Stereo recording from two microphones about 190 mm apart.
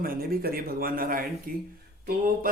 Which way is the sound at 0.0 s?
50° right (ahead or behind).